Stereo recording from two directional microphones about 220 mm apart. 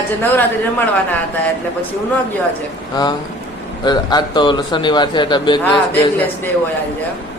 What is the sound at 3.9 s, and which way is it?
Speech, 20° left (ahead or behind).